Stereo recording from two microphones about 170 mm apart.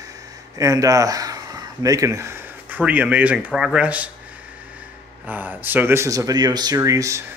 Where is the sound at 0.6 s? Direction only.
20° right (ahead or behind).